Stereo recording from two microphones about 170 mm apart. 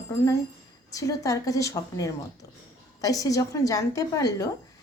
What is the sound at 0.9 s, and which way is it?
Speech, 20° left (ahead or behind).